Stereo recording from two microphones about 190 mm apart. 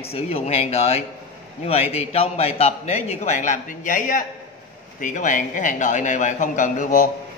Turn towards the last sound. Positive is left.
turn(degrees=45)  # may be behind; listen again after turning